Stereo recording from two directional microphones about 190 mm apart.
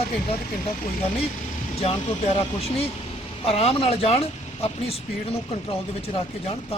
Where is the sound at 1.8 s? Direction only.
30° left (ahead or behind).